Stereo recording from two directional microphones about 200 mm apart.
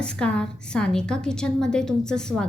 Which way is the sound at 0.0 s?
5° left (ahead or behind).